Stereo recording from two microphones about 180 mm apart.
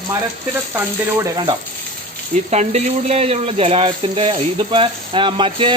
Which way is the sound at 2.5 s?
40° right (ahead or behind).